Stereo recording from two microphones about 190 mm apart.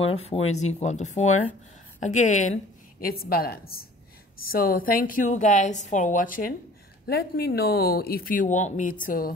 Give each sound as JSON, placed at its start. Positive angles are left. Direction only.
{"t": 0.0, "sound": "a woman's voice", "side_deg": 30}